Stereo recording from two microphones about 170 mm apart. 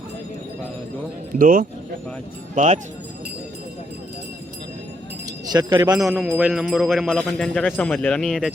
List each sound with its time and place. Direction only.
1.4 s speech: 55° right (ahead or behind)
5.5 s speech: 25° right (ahead or behind)
6.1 s a man's voice: 10° right (ahead or behind)